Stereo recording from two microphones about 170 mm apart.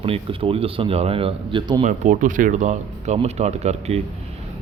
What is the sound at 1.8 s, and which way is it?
A man's voice, 50° right (ahead or behind).